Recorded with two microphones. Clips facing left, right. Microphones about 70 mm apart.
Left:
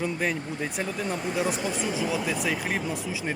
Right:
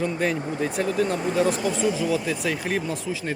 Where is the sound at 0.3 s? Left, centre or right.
Right.